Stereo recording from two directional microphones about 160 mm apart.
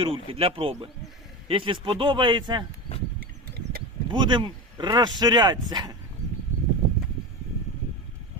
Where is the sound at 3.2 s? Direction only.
70° right (ahead or behind).